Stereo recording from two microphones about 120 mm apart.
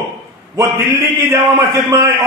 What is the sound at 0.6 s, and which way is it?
A man's voice, 20° right (ahead or behind).